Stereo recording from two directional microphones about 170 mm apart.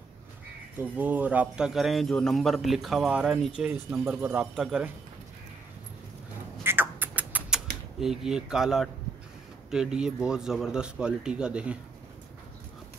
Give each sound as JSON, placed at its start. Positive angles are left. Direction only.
{"t": 0.7, "sound": "a man's voice", "side_deg": -10}
{"t": 6.6, "sound": "rodents", "side_deg": -10}
{"t": 9.7, "sound": "a man's voice", "side_deg": -5}